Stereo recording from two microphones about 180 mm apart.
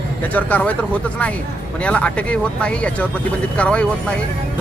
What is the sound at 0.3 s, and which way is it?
A man's voice, 10° left (ahead or behind).